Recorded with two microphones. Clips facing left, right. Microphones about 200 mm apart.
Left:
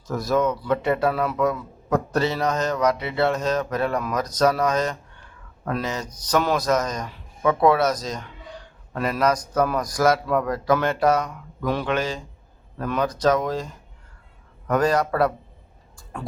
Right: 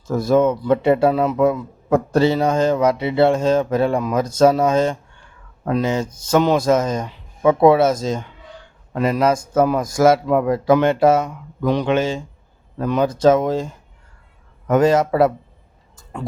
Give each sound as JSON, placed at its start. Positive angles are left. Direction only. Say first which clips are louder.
{"t": 0.1, "sound": "a man's voice", "louder": "right 6 dB", "side_deg": -25}
{"t": 14.7, "sound": "a man's voice", "louder": "right 6 dB", "side_deg": -25}